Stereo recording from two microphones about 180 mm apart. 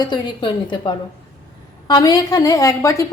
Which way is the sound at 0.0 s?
25° left (ahead or behind).